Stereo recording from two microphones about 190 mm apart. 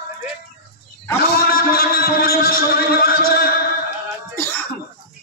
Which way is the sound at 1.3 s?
50° left (ahead or behind).